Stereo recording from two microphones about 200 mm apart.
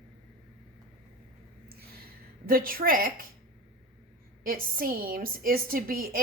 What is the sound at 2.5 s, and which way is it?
Speech, 45° right (ahead or behind).